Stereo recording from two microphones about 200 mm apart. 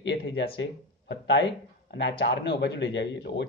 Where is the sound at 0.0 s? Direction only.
60° left (ahead or behind).